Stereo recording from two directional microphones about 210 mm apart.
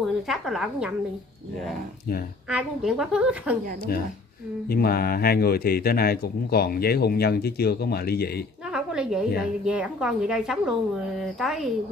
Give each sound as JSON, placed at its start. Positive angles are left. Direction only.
{"t": 0.0, "sound": "a woman's voice", "side_deg": 0}
{"t": 2.5, "sound": "a woman's voice", "side_deg": 0}
{"t": 4.6, "sound": "speech", "side_deg": 45}
{"t": 8.6, "sound": "a sound", "side_deg": -5}
{"t": 9.4, "sound": "a woman's voice", "side_deg": -5}